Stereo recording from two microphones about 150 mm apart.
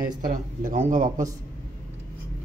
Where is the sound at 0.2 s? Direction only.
60° right (ahead or behind).